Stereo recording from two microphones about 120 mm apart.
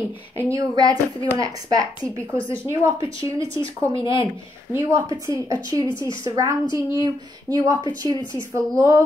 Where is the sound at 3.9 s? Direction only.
45° left (ahead or behind).